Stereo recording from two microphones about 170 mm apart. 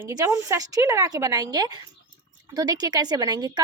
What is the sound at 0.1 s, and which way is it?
A woman's voice, 20° right (ahead or behind).